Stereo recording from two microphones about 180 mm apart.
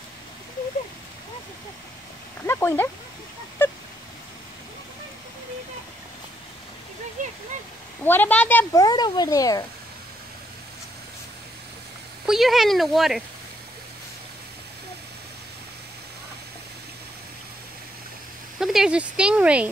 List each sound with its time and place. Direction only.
2.4 s a sound: 10° left (ahead or behind)
7.2 s a sound: 45° right (ahead or behind)
8.0 s a woman's voice: 10° left (ahead or behind)
8.8 s a child's voice: 25° left (ahead or behind)
12.3 s speech: centre (ahead or behind)
18.6 s speech: 5° right (ahead or behind)